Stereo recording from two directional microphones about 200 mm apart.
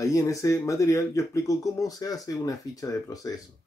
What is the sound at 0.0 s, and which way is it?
Speech, 15° left (ahead or behind).